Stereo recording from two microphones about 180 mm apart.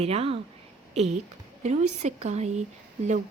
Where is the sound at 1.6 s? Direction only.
40° right (ahead or behind).